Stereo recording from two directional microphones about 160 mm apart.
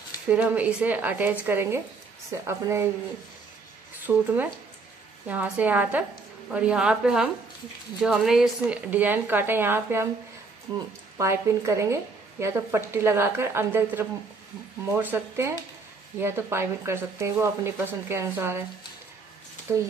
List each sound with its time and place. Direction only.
0.3 s a woman's voice: 10° right (ahead or behind)
4.1 s a woman's voice: 10° right (ahead or behind)
11.1 s a woman's voice: 20° right (ahead or behind)
19.7 s a woman's voice: 15° right (ahead or behind)